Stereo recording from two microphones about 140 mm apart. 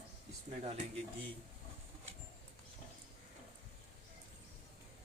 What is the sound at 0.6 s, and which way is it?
Speech, 50° right (ahead or behind).